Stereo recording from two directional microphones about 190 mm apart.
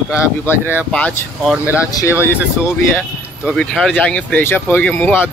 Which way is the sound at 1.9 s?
15° left (ahead or behind).